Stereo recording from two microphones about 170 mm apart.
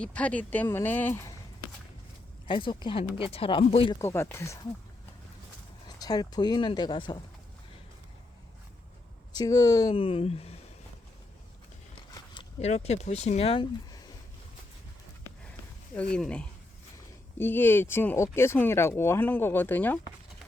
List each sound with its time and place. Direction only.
0.0 s speech: 5° left (ahead or behind)
2.5 s speech: 30° left (ahead or behind)
4.0 s speech: 15° left (ahead or behind)
6.0 s speech: 25° left (ahead or behind)
9.3 s speech: 25° left (ahead or behind)
11.9 s a sound: 25° left (ahead or behind)
12.6 s speech: 40° left (ahead or behind)
16.1 s speech: 5° left (ahead or behind)